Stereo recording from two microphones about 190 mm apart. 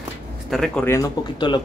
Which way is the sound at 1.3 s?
25° left (ahead or behind).